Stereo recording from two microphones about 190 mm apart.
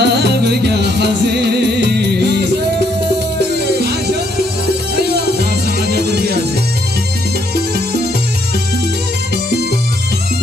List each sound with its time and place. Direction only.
0.0 s music: 60° right (ahead or behind)
5.9 s music: 60° right (ahead or behind)